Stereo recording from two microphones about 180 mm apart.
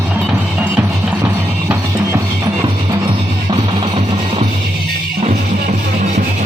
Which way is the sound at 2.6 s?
25° right (ahead or behind).